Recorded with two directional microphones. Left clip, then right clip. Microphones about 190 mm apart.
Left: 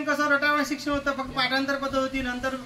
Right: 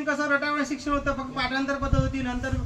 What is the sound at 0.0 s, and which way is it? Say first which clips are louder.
A woman's voice: left 2 dB; 20° right (ahead or behind).